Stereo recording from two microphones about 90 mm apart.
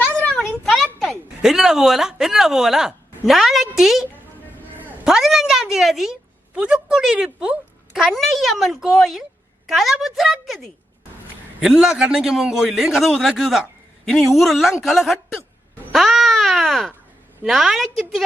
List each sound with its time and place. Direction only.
0.0 s a sound: 15° left (ahead or behind)
0.6 s a sound: 5° left (ahead or behind)
1.4 s speech: 5° right (ahead or behind)
5.0 s a woman's voice: 5° right (ahead or behind)
15.9 s babbling: centre (ahead or behind)
17.4 s speech: 5° right (ahead or behind)